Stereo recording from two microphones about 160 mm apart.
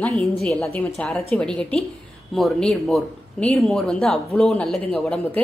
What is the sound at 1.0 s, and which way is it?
A woman's voice, centre (ahead or behind).